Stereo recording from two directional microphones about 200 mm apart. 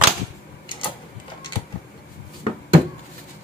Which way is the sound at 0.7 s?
25° left (ahead or behind).